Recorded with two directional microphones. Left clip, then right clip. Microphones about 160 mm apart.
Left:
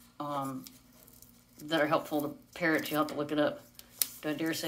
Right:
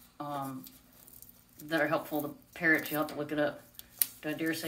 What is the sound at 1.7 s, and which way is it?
Speech, 25° left (ahead or behind).